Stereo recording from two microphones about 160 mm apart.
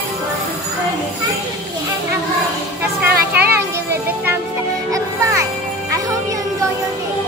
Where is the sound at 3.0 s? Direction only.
10° right (ahead or behind).